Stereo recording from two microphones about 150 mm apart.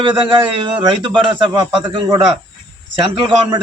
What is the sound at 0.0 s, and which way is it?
A man's voice, 35° right (ahead or behind).